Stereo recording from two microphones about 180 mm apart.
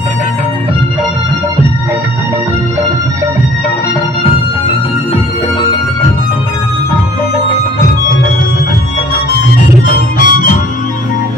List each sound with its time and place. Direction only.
9.8 s harmonica: 50° left (ahead or behind)